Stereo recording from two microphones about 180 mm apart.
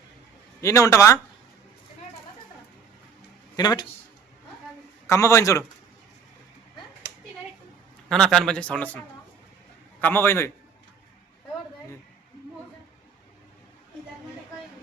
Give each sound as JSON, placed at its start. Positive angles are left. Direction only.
{"t": 0.6, "sound": "a man's voice", "side_deg": 15}
{"t": 3.5, "sound": "speech", "side_deg": 25}
{"t": 5.0, "sound": "a man's voice", "side_deg": 15}
{"t": 8.1, "sound": "a man's voice", "side_deg": 5}
{"t": 10.0, "sound": "a man's voice", "side_deg": 15}